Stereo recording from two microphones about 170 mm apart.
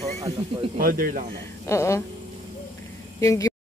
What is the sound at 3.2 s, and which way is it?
Speech, 20° left (ahead or behind).